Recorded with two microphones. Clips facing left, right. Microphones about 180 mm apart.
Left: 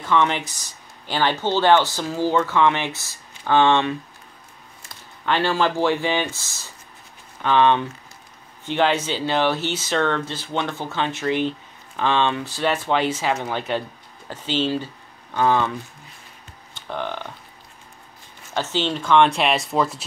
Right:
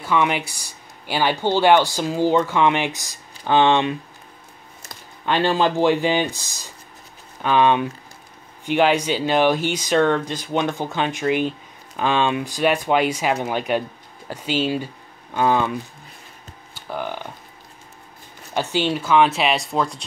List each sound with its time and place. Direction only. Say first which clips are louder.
0.0 s speech: even; 10° right (ahead or behind)
5.2 s speech: right 2 dB; 15° right (ahead or behind)
16.7 s speech: even; 5° right (ahead or behind)
18.5 s speech: right 2 dB; 15° right (ahead or behind)